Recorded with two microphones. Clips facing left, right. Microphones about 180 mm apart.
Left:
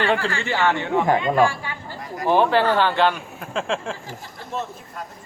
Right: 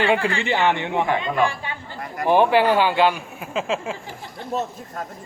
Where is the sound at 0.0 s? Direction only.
10° right (ahead or behind).